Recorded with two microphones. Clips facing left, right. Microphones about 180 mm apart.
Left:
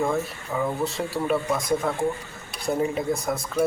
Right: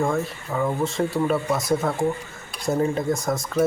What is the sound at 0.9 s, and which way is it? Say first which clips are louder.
Speech: right 4 dB; 5° left (ahead or behind).